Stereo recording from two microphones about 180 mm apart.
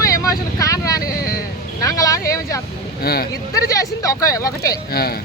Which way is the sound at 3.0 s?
60° left (ahead or behind).